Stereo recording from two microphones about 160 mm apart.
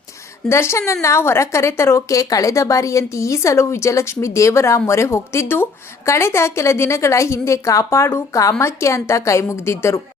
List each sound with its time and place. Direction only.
0.4 s a woman's voice: 15° left (ahead or behind)